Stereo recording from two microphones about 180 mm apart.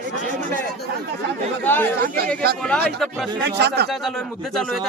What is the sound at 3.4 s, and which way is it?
Speech, 70° right (ahead or behind).